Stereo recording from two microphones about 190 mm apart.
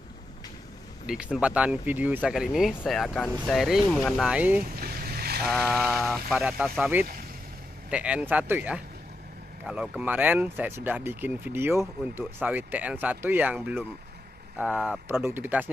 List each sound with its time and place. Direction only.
1.0 s speech: 5° right (ahead or behind)
4.7 s boat: 50° right (ahead or behind)
5.4 s speech: 5° left (ahead or behind)